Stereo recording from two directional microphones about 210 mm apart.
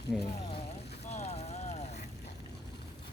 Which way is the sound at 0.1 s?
Centre (ahead or behind).